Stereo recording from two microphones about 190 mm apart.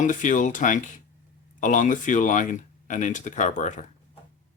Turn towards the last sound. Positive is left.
turn(degrees=40)  # may be behind; listen again after turning